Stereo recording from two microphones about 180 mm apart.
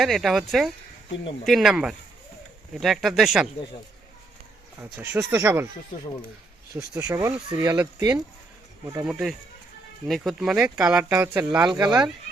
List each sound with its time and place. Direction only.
0.0 s speech: centre (ahead or behind)
4.8 s speech: 10° right (ahead or behind)
6.7 s speech: 20° right (ahead or behind)
11.1 s speech: 15° right (ahead or behind)